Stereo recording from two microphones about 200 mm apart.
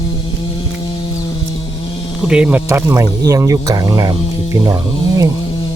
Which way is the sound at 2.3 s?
5° right (ahead or behind).